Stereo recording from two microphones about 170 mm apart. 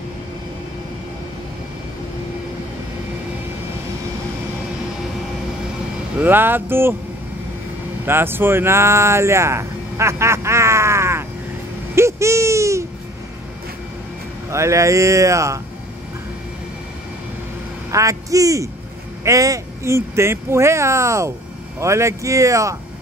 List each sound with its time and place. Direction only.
6.1 s speech: 10° right (ahead or behind)
8.0 s speech: 15° right (ahead or behind)
14.5 s speech: 15° right (ahead or behind)
17.9 s a man's voice: 20° right (ahead or behind)